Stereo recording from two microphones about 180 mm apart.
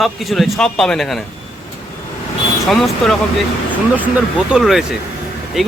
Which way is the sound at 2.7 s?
Centre (ahead or behind).